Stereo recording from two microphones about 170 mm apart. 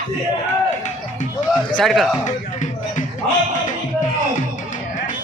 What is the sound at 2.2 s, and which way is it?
Music, 45° left (ahead or behind).